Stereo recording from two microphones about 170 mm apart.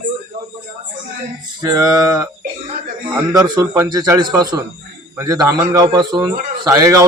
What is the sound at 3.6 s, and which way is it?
A man's voice, 25° right (ahead or behind).